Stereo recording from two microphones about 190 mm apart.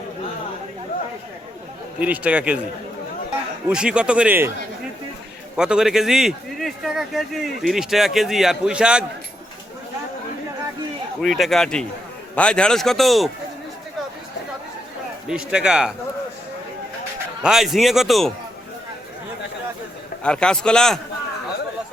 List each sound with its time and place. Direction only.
2.0 s a man's voice: 5° right (ahead or behind)
3.7 s a man's voice: 5° right (ahead or behind)
5.5 s a man's voice: 5° right (ahead or behind)
11.2 s a man's voice: centre (ahead or behind)
15.3 s a man's voice: 5° right (ahead or behind)
17.4 s a man's voice: centre (ahead or behind)
20.2 s a man's voice: 5° left (ahead or behind)